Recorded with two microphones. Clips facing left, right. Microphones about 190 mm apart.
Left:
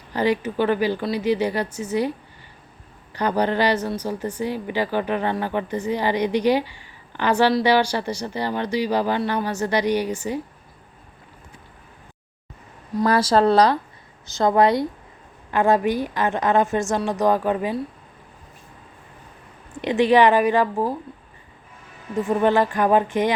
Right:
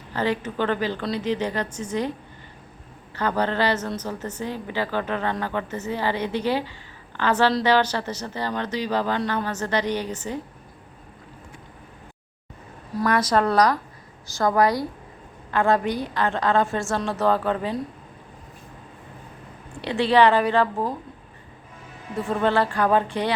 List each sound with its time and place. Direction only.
0.1 s speech: 15° left (ahead or behind)
3.2 s speech: 15° left (ahead or behind)
13.1 s speech: 30° left (ahead or behind); by 17.7 s 15° left (ahead or behind)
19.8 s speech: 15° left (ahead or behind)
22.1 s speech: 15° left (ahead or behind)